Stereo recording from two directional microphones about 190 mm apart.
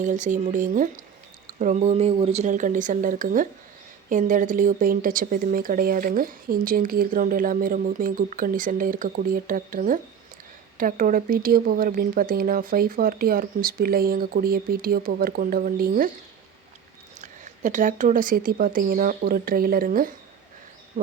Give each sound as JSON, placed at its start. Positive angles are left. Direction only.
{"t": 0.0, "sound": "speech", "side_deg": -40}
{"t": 17.2, "sound": "speech", "side_deg": -40}
{"t": 20.9, "sound": "a sound", "side_deg": -45}